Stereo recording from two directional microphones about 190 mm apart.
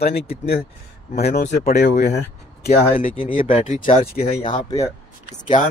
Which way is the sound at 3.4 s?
40° left (ahead or behind).